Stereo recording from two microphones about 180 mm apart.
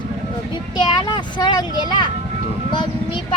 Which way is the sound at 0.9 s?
25° left (ahead or behind).